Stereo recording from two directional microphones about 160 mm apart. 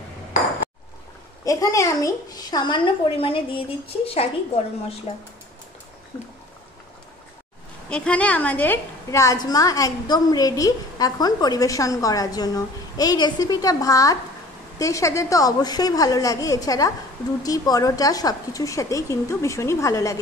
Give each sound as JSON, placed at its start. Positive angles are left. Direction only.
{"t": 1.4, "sound": "a woman's voice", "side_deg": 20}
{"t": 7.9, "sound": "a woman's voice", "side_deg": 10}